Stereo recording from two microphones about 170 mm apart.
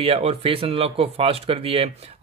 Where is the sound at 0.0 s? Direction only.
35° right (ahead or behind).